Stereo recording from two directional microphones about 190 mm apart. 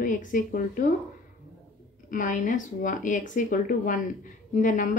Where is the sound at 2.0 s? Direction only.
45° left (ahead or behind).